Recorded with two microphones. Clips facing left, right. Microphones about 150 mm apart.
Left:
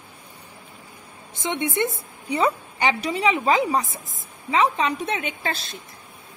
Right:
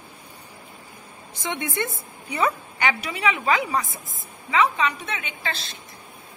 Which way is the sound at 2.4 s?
30° left (ahead or behind).